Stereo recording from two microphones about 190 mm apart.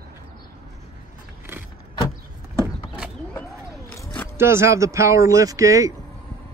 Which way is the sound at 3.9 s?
15° left (ahead or behind).